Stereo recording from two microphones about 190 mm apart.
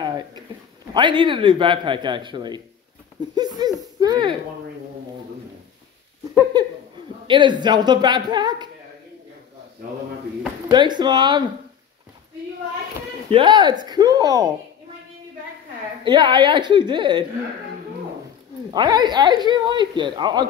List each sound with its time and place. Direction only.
0.0 s a sound: 20° right (ahead or behind)
0.9 s speech: 25° right (ahead or behind)
6.5 s chuckle: 20° right (ahead or behind)
7.2 s speech: 25° right (ahead or behind)
10.7 s speech: 25° right (ahead or behind)
13.3 s speech: 25° right (ahead or behind)
16.0 s speech: 25° right (ahead or behind)
18.7 s speech: 20° right (ahead or behind)